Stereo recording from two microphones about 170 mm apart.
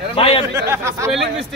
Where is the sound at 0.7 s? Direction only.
15° right (ahead or behind).